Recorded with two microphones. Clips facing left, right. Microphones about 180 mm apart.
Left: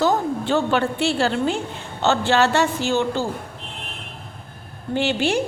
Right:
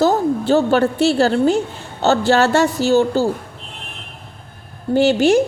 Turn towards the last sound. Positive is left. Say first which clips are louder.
# right 8 dB
turn(degrees=-45)  # may be behind; listen again after turning